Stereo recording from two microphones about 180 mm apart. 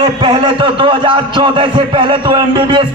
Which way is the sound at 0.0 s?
25° right (ahead or behind).